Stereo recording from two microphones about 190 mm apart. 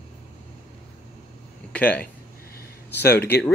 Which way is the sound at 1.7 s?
10° left (ahead or behind).